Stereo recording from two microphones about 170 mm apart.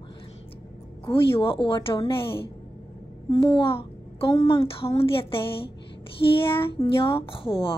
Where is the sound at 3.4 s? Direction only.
30° left (ahead or behind).